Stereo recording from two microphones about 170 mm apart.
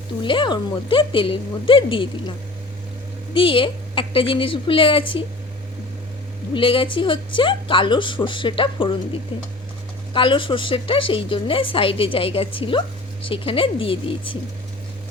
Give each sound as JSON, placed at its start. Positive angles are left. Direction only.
{"t": 0.2, "sound": "a woman's voice", "side_deg": 30}
{"t": 3.3, "sound": "a woman's voice", "side_deg": 30}
{"t": 6.5, "sound": "a woman's voice", "side_deg": 30}
{"t": 10.1, "sound": "a woman's voice", "side_deg": 30}